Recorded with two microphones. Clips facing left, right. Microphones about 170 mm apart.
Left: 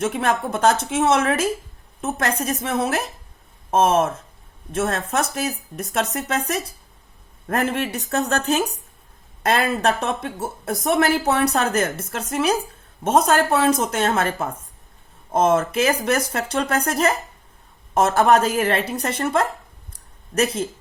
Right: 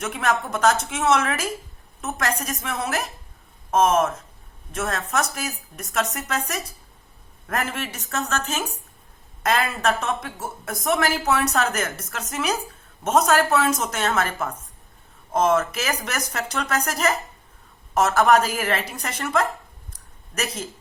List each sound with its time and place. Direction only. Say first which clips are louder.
0.0 s a woman's voice: left 3 dB; 30° left (ahead or behind)
17.9 s a woman's voice: left 1 dB; 30° left (ahead or behind)
19.9 s a sound: left 10 dB; 30° left (ahead or behind)